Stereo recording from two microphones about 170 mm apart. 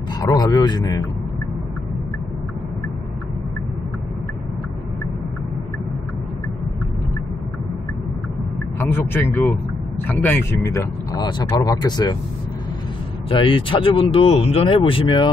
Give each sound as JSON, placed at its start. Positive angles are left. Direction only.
{"t": 0.2, "sound": "speech", "side_deg": 20}
{"t": 8.7, "sound": "a man's voice", "side_deg": 10}
{"t": 13.3, "sound": "speech", "side_deg": 30}